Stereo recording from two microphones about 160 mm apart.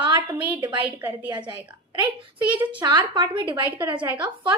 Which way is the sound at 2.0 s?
35° right (ahead or behind).